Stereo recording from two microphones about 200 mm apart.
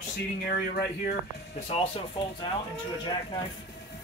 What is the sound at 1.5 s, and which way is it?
Speech, 30° left (ahead or behind).